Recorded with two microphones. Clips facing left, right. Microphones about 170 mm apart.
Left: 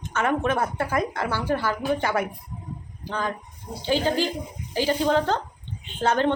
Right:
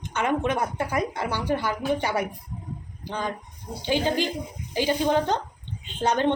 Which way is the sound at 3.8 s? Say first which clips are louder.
Left 1 dB; 15° right (ahead or behind).